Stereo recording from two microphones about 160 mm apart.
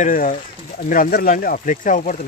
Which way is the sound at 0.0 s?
55° left (ahead or behind).